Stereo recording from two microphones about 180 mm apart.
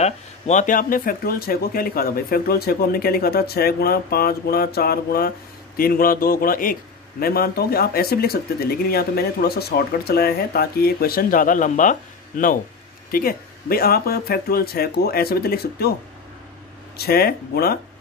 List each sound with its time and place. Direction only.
0.0 s a man's voice: 40° left (ahead or behind); by 15.9 s 60° left (ahead or behind)
16.9 s a man's voice: 60° left (ahead or behind)